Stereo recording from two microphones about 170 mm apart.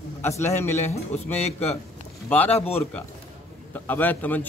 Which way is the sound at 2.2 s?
10° left (ahead or behind).